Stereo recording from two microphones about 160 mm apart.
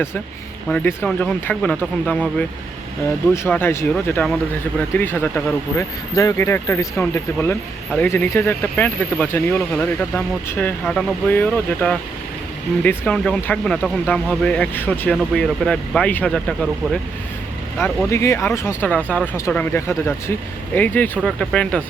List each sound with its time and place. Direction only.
0.7 s speech: 10° left (ahead or behind)
3.3 s speech: 15° left (ahead or behind)
18.1 s speech: 15° left (ahead or behind)